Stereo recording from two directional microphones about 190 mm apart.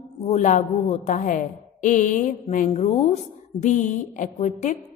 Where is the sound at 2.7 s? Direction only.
30° left (ahead or behind).